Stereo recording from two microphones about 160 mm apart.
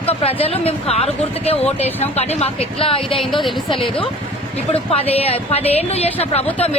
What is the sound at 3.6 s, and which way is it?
Speech, 35° left (ahead or behind).